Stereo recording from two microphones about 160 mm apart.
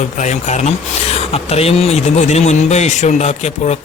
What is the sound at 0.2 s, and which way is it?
A man's voice, 45° left (ahead or behind).